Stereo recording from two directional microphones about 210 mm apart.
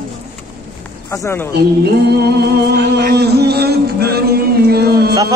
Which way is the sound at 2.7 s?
50° right (ahead or behind).